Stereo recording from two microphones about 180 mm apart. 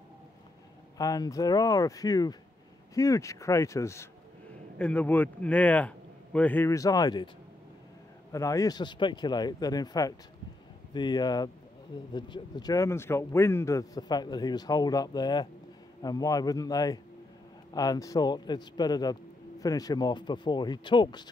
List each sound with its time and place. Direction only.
0.9 s a man's voice: 20° left (ahead or behind)
8.3 s a man's voice: 15° left (ahead or behind)